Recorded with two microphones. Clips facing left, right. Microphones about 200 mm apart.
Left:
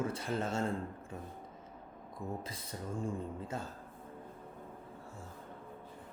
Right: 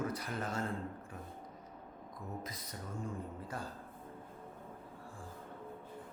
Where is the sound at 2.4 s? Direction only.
30° left (ahead or behind).